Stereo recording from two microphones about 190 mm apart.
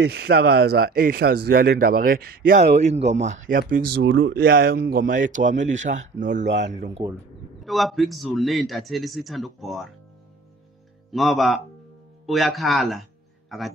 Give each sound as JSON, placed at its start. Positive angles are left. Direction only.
{"t": 0.0, "sound": "speech", "side_deg": -60}
{"t": 3.0, "sound": "speech", "side_deg": -65}
{"t": 4.4, "sound": "speech", "side_deg": -50}
{"t": 5.4, "sound": "speech", "side_deg": -70}
{"t": 5.7, "sound": "a man's voice", "side_deg": -40}
{"t": 6.4, "sound": "speech", "side_deg": -70}
{"t": 6.7, "sound": "a man's voice", "side_deg": -35}
{"t": 7.6, "sound": "a man's voice", "side_deg": 0}
{"t": 11.1, "sound": "a man's voice", "side_deg": 0}